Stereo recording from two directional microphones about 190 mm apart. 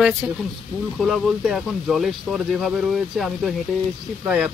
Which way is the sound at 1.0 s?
Centre (ahead or behind).